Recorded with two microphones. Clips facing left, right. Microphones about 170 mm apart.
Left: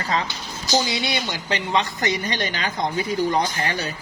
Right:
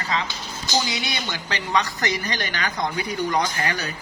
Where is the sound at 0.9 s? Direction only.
25° left (ahead or behind).